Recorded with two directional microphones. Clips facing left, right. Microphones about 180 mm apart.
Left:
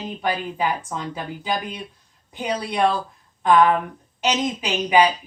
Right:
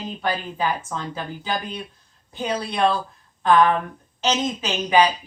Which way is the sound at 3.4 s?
15° left (ahead or behind).